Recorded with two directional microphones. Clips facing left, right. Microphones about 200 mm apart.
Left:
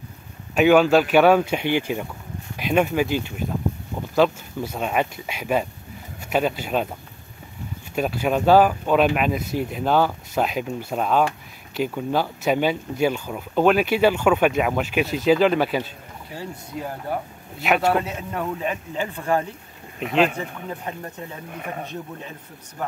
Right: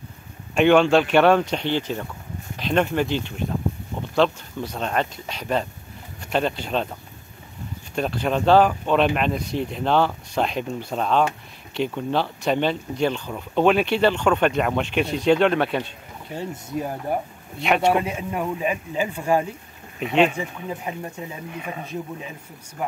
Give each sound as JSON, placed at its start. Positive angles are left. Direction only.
{"t": 0.6, "sound": "speech", "side_deg": 5}
{"t": 7.9, "sound": "speech", "side_deg": 5}
{"t": 16.3, "sound": "speech", "side_deg": -20}
{"t": 17.6, "sound": "speech", "side_deg": 0}
{"t": 18.0, "sound": "speech", "side_deg": -10}
{"t": 20.0, "sound": "speech", "side_deg": 0}
{"t": 20.3, "sound": "speech", "side_deg": -10}
{"t": 21.5, "sound": "speech", "side_deg": 50}
{"t": 22.8, "sound": "speech", "side_deg": -10}